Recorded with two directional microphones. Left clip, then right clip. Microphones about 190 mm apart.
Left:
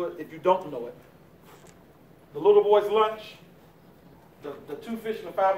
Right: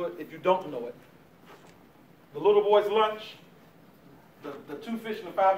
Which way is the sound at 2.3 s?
5° left (ahead or behind).